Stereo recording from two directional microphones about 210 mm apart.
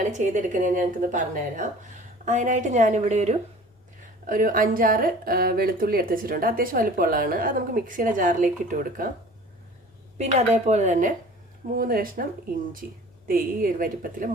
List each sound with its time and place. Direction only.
0.0 s a woman's voice: 35° right (ahead or behind)
10.2 s a woman's voice: 30° right (ahead or behind)